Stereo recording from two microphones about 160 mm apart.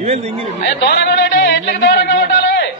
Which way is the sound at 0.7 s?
85° left.